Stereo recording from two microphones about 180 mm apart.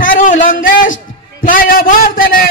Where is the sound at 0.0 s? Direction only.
50° left (ahead or behind).